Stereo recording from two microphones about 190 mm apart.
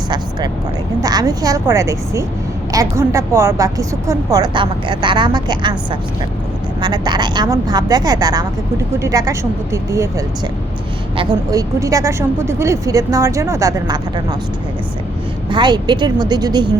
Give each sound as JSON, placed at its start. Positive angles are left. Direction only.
{"t": 1.0, "sound": "a woman's voice", "side_deg": -20}
{"t": 15.4, "sound": "a woman's voice", "side_deg": -25}